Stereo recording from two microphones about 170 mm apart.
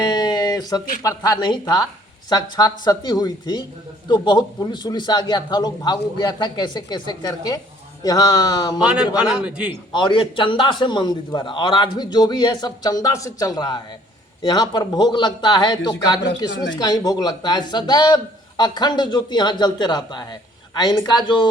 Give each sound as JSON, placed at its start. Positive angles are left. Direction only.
{"t": 0.0, "sound": "a sound", "side_deg": 25}
{"t": 1.0, "sound": "a man's voice", "side_deg": 20}
{"t": 8.8, "sound": "a man's voice", "side_deg": -5}
{"t": 9.9, "sound": "a man's voice", "side_deg": 30}